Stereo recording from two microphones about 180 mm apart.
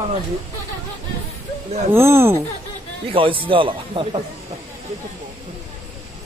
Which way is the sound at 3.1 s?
30° right (ahead or behind).